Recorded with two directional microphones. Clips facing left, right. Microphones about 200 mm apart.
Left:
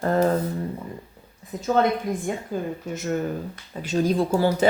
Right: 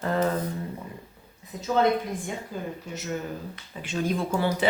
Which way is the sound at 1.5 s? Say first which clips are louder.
Left 2 dB; 50° left (ahead or behind).